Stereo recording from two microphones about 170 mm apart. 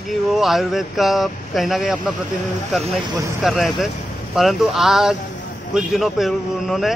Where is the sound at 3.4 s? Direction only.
Centre (ahead or behind).